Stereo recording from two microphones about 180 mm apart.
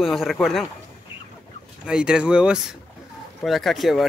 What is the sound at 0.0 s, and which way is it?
Speech, centre (ahead or behind).